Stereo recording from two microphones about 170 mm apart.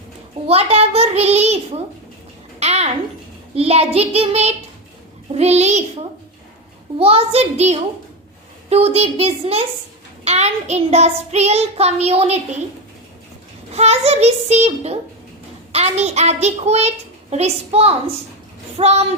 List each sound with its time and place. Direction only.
0.4 s child singing: 35° right (ahead or behind)
2.6 s a sound: 40° right (ahead or behind)
3.5 s child singing: 35° right (ahead or behind)
13.7 s child singing: 40° right (ahead or behind)